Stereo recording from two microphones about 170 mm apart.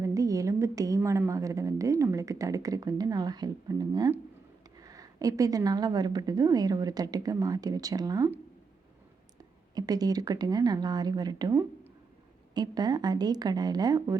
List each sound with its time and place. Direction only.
0.0 s a woman's voice: 20° right (ahead or behind)
9.7 s a woman's voice: 20° right (ahead or behind)